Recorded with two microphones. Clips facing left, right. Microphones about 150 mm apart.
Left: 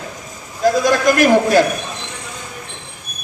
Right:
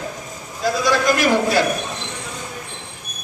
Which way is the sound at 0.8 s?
50° left (ahead or behind).